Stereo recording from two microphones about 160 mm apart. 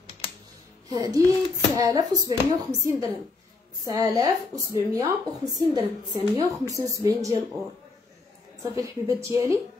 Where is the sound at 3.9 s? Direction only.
20° right (ahead or behind).